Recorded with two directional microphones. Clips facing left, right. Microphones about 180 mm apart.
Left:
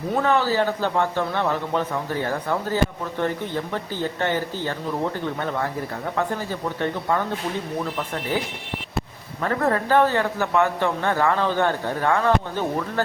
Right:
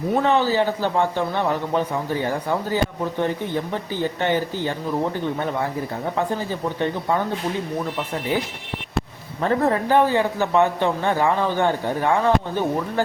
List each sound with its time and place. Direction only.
0.3 s speech: 20° right (ahead or behind)
8.3 s speech: 15° right (ahead or behind)